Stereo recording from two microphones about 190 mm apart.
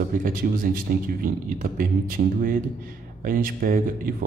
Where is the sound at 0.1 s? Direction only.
45° right (ahead or behind).